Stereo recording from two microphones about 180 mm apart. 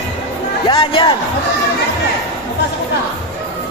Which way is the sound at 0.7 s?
25° left (ahead or behind).